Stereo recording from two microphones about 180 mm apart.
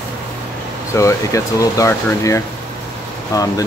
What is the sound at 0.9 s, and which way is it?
Speech, 15° left (ahead or behind).